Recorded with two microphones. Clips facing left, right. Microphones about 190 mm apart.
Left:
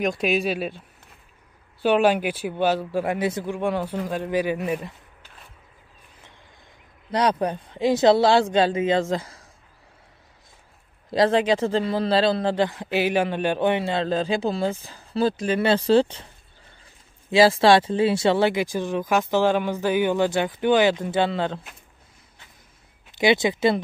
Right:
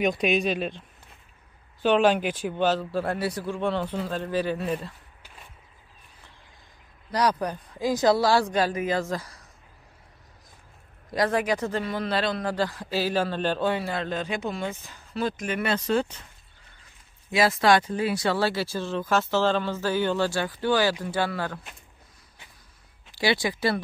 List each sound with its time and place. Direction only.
0.0 s a man's voice: centre (ahead or behind)
7.1 s speech: 25° left (ahead or behind)
11.1 s speech: 25° left (ahead or behind)
17.3 s speech: 30° left (ahead or behind)
23.1 s speech: 20° left (ahead or behind)